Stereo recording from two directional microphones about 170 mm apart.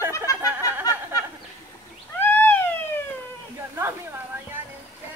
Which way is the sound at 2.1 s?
10° left (ahead or behind).